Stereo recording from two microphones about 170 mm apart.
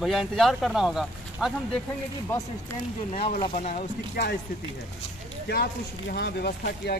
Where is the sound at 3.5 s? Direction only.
45° left (ahead or behind).